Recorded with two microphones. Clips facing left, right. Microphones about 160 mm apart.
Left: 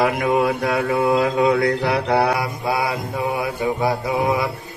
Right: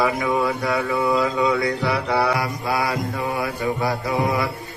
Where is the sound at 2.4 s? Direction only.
20° left (ahead or behind).